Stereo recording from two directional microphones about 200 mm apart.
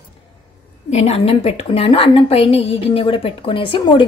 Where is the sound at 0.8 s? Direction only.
35° left (ahead or behind).